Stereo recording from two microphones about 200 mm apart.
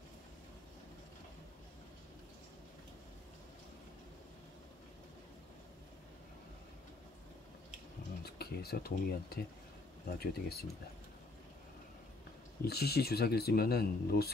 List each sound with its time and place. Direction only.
8.2 s speech: 50° left (ahead or behind)
12.6 s speech: 50° left (ahead or behind)